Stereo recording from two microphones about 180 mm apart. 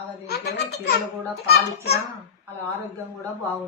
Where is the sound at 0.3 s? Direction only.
65° left (ahead or behind).